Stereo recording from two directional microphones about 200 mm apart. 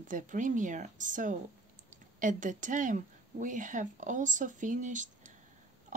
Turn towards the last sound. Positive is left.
turn(degrees=-40)  # may be behind; listen again after turning